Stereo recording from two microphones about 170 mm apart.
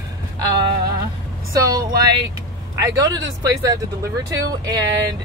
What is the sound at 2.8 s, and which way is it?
Speech, 20° right (ahead or behind).